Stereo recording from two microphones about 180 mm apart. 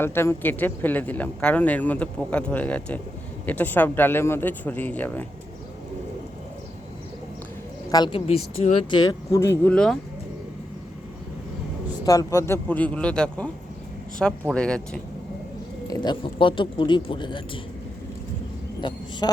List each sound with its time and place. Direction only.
0.0 s speech: 15° left (ahead or behind)
7.9 s speech: 25° left (ahead or behind)
9.7 s speech: 5° left (ahead or behind)
12.0 s speech: 20° left (ahead or behind)
15.9 s speech: 25° left (ahead or behind)
18.8 s speech: 25° left (ahead or behind)